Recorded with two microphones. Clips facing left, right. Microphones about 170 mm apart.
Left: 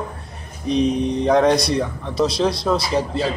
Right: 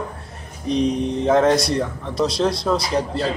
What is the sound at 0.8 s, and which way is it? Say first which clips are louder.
Speech: left 2 dB; 20° left (ahead or behind).